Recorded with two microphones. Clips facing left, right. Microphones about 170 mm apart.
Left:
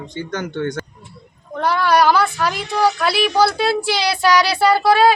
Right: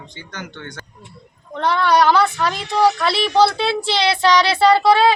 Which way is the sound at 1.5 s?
5° left (ahead or behind).